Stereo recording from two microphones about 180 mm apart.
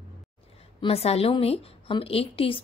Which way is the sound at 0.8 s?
30° left (ahead or behind).